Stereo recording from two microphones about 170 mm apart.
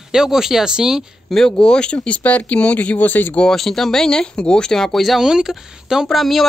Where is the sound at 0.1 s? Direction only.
5° right (ahead or behind).